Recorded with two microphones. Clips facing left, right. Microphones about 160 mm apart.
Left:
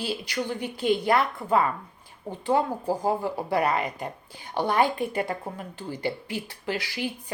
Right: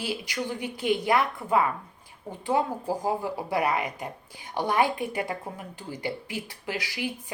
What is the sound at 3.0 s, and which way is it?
A woman's voice, 15° right (ahead or behind).